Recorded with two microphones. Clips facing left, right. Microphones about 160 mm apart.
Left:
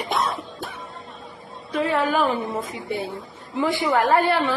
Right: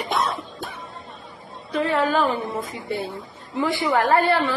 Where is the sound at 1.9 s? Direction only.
20° left (ahead or behind).